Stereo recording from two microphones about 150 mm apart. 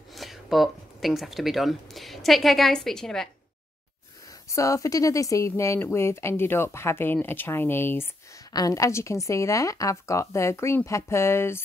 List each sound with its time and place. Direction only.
0.1 s speech: centre (ahead or behind)
4.3 s a woman's voice: 20° left (ahead or behind)